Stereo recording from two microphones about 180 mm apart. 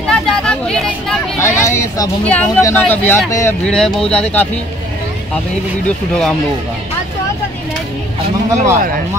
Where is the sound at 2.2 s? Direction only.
5° left (ahead or behind).